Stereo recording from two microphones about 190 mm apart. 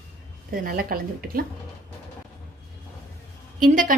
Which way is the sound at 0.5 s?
50° right (ahead or behind).